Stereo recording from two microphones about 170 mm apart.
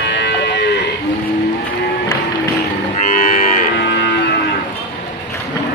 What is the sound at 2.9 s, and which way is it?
Livestock, 50° left (ahead or behind).